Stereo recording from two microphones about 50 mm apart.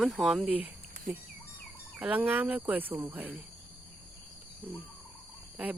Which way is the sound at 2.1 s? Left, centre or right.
Right.